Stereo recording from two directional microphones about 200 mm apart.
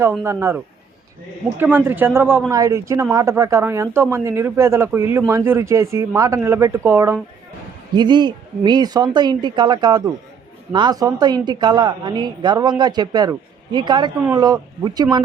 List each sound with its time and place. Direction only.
0.1 s speech: 10° right (ahead or behind)